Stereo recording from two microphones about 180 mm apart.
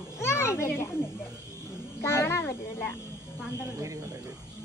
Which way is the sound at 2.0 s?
15° left (ahead or behind).